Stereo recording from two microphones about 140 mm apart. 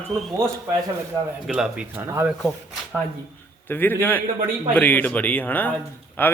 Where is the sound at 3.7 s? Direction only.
15° left (ahead or behind).